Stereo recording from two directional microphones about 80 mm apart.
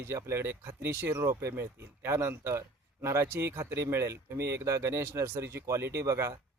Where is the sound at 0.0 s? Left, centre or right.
Right.